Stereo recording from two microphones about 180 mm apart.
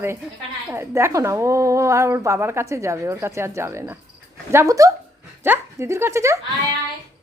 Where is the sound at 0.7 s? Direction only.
15° right (ahead or behind).